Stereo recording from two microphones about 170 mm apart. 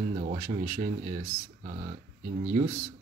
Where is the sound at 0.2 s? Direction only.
45° right (ahead or behind).